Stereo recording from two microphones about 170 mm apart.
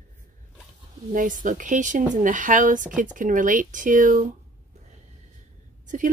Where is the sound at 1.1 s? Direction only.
50° right (ahead or behind).